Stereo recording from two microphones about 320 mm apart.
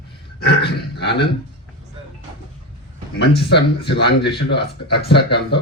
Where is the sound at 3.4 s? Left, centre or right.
Left.